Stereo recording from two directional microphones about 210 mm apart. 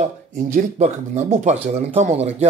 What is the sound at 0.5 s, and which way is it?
Speech, 35° right (ahead or behind).